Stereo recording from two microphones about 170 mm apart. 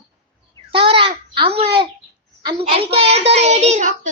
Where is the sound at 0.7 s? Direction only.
30° right (ahead or behind).